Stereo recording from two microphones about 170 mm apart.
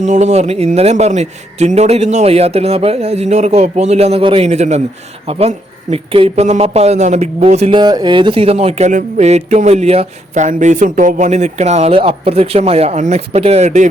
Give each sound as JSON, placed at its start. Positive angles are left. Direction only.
{"t": 0.0, "sound": "speech", "side_deg": -45}
{"t": 7.8, "sound": "speech", "side_deg": -25}